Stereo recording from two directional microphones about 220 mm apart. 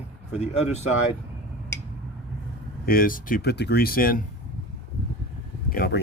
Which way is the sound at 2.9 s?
40° left (ahead or behind).